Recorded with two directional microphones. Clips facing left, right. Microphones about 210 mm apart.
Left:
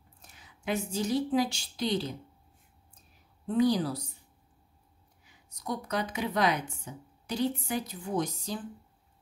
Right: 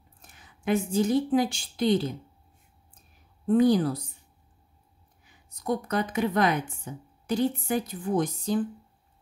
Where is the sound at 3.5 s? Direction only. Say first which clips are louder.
Right 5 dB; 55° right (ahead or behind).